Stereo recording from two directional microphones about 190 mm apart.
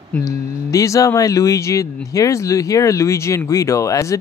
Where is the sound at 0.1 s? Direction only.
15° left (ahead or behind).